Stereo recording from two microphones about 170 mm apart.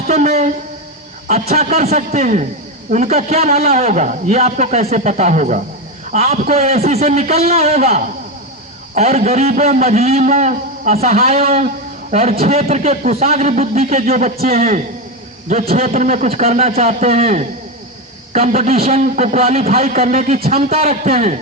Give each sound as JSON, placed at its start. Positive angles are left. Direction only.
{"t": 0.1, "sound": "a man's voice", "side_deg": -40}